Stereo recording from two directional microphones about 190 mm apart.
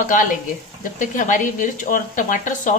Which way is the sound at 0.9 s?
45° left (ahead or behind).